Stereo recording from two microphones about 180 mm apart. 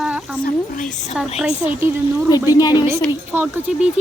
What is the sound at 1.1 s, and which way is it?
Speech, 5° right (ahead or behind).